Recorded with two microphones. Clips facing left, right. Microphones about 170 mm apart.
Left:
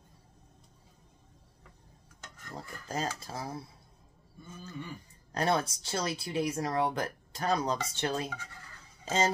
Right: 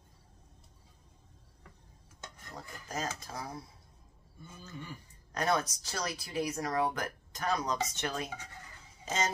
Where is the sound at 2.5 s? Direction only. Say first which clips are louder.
Left 3 dB; 30° left (ahead or behind).